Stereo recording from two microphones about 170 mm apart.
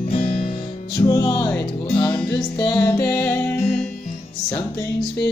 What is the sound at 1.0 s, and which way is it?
Music, 15° left (ahead or behind).